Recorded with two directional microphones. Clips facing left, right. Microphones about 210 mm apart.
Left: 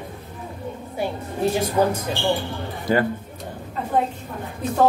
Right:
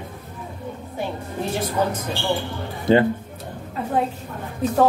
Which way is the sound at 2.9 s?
25° right (ahead or behind).